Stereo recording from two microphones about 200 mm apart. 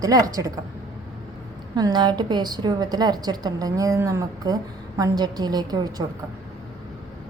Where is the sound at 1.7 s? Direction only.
20° right (ahead or behind).